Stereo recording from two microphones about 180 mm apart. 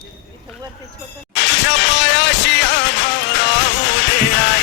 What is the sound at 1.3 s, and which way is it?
Music, 80° left.